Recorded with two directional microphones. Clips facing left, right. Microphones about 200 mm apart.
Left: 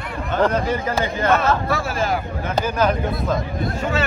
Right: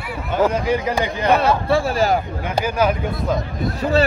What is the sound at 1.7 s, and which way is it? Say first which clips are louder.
Speech: right 5 dB; 35° right (ahead or behind).